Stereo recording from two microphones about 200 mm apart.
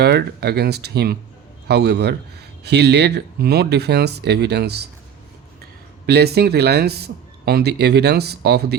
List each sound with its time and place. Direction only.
0.0 s speech: 55° right (ahead or behind)
6.1 s speech: 55° right (ahead or behind)